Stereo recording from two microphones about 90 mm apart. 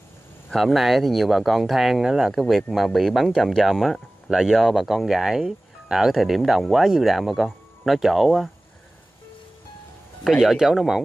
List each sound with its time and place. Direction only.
0.5 s speech: centre (ahead or behind)
10.2 s speech: 5° right (ahead or behind)